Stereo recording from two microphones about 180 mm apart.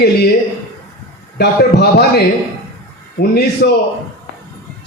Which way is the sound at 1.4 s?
65° left (ahead or behind).